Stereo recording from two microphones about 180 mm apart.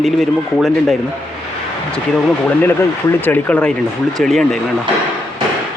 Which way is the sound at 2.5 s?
10° left (ahead or behind).